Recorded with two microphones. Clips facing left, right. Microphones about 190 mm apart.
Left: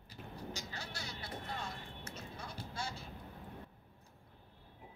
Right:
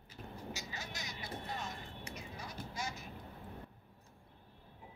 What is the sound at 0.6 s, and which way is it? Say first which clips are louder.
Music: even; 15° right (ahead or behind).